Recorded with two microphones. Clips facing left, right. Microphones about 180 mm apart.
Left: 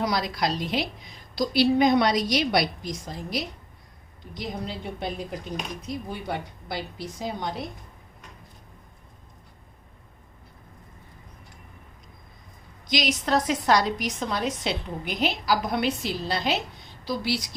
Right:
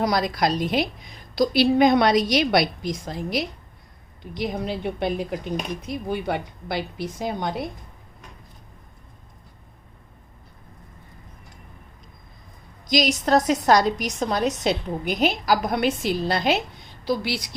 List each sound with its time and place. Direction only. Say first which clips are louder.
0.0 s a woman's voice: right 4 dB; 50° right (ahead or behind)
12.9 s a woman's voice: right 5 dB; 40° right (ahead or behind); by 17.4 s 55° right (ahead or behind)